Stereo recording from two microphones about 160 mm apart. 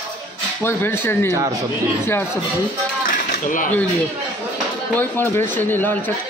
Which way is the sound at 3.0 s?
55° left (ahead or behind).